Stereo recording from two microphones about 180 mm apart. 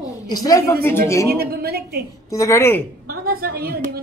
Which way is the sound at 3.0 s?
55° right (ahead or behind).